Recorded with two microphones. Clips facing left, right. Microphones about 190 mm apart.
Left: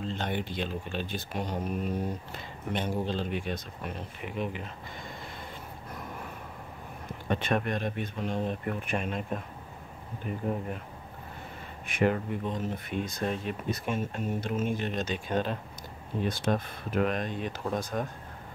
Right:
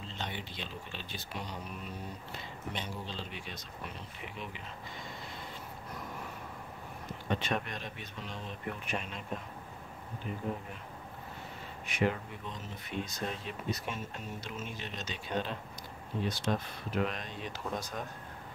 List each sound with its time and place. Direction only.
0.1 s speech: 50° left (ahead or behind)
7.2 s speech: 55° left (ahead or behind)
11.8 s speech: 50° left (ahead or behind)